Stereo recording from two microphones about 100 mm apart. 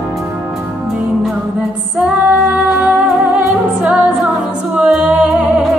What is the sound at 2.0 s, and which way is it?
Female singing, 10° right (ahead or behind).